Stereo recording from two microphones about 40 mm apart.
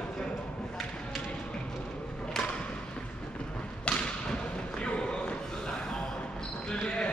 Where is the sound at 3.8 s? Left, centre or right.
Left.